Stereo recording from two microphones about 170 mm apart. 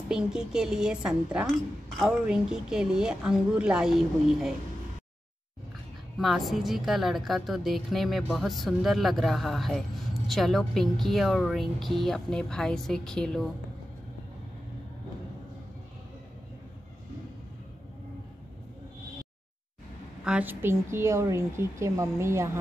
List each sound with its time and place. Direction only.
0.1 s a woman's voice: 5° right (ahead or behind)
6.1 s a woman's voice: centre (ahead or behind)
20.2 s a woman's voice: 10° right (ahead or behind)